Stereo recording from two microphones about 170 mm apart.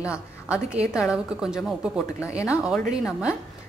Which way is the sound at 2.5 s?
5° right (ahead or behind).